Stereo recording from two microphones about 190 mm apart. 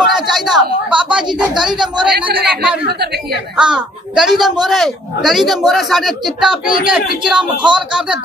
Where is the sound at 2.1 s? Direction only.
55° right (ahead or behind).